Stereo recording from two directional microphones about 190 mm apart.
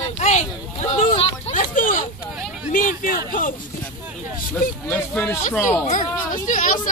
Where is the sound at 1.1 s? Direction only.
30° left (ahead or behind).